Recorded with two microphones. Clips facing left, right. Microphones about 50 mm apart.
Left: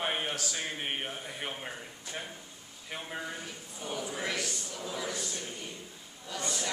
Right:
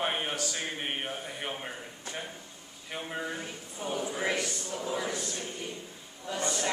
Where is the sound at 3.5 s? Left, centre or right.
Centre.